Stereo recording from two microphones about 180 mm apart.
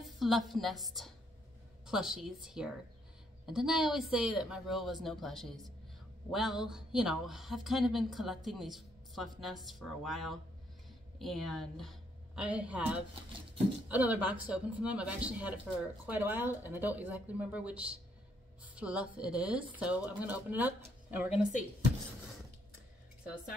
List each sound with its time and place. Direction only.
0.0 s a woman's voice: centre (ahead or behind)